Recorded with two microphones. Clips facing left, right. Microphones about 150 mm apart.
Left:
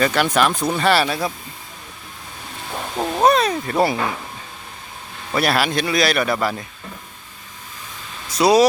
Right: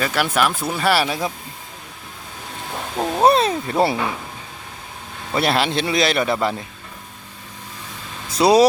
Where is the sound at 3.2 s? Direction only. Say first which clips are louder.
Right 1 dB; 30° right (ahead or behind).